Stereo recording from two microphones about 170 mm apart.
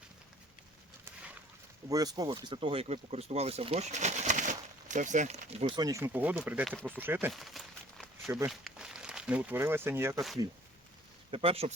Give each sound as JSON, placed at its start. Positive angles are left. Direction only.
{"t": 1.9, "sound": "speech", "side_deg": -20}
{"t": 7.3, "sound": "a sound", "side_deg": 0}
{"t": 8.4, "sound": "speech", "side_deg": -5}
{"t": 11.3, "sound": "speech", "side_deg": -35}